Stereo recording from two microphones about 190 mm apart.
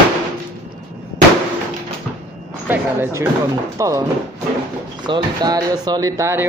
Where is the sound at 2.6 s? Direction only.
15° right (ahead or behind).